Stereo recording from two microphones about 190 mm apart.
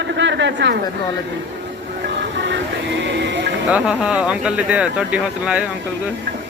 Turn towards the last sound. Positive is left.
turn(degrees=-5)  # may be behind; listen again after turning